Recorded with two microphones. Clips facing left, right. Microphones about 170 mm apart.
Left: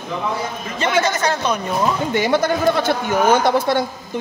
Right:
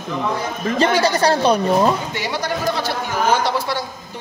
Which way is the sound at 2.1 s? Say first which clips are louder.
Left 6 dB; 50° left (ahead or behind).